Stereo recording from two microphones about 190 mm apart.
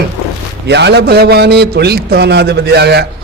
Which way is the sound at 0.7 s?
65° right (ahead or behind).